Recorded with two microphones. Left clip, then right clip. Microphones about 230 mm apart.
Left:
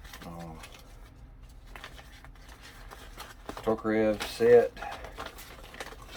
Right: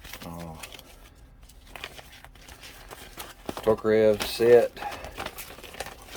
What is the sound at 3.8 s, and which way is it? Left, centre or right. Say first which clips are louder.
Speech: right 7 dB; right.